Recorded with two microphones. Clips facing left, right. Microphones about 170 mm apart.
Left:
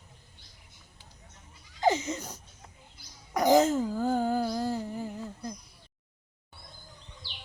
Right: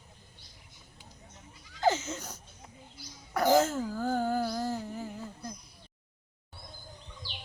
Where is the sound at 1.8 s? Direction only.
15° left (ahead or behind).